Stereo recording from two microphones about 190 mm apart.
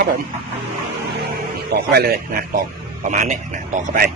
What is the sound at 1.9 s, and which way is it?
A man's voice, 55° right (ahead or behind).